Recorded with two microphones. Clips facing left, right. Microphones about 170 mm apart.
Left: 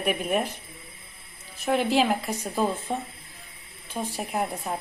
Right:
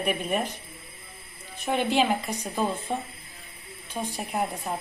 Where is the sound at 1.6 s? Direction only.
Centre (ahead or behind).